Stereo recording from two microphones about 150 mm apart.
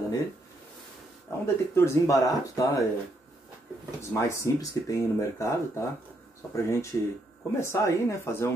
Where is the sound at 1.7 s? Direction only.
20° left (ahead or behind).